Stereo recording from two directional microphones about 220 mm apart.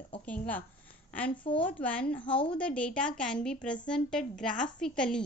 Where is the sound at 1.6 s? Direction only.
5° left (ahead or behind).